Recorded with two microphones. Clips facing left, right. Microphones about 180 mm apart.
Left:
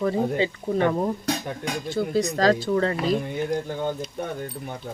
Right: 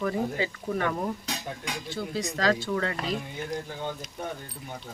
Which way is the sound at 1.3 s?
50° left (ahead or behind).